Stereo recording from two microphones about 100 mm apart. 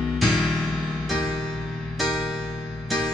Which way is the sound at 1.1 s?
40° left (ahead or behind).